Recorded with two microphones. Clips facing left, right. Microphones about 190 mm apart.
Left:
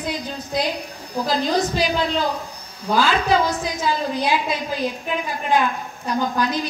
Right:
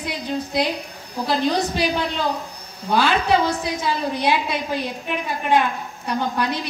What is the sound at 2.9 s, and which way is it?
A woman's voice, 65° right (ahead or behind).